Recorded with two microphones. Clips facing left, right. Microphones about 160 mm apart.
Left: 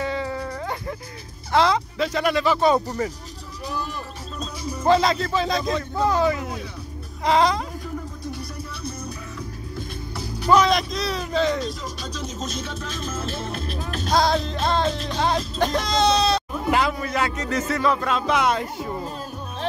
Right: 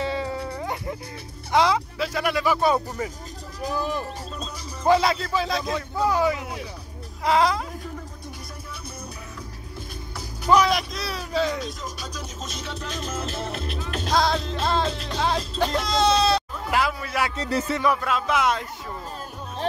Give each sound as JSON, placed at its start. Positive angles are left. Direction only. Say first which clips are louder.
{"t": 0.0, "sound": "music", "louder": "left 1 dB", "side_deg": -20}
{"t": 1.5, "sound": "a man's voice", "louder": "left 1 dB", "side_deg": -10}
{"t": 4.8, "sound": "a man's voice", "louder": "left 1 dB", "side_deg": -10}
{"t": 10.5, "sound": "speech", "louder": "left 2 dB", "side_deg": -10}
{"t": 12.9, "sound": "music", "louder": "even", "side_deg": -20}
{"t": 14.1, "sound": "speech", "louder": "left 2 dB", "side_deg": 0}
{"t": 17.4, "sound": "speech", "louder": "left 1 dB", "side_deg": -30}
{"t": 17.8, "sound": "speech", "louder": "left 3 dB", "side_deg": -5}